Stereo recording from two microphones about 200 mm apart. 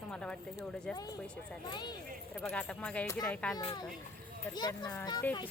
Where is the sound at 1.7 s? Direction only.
20° left (ahead or behind).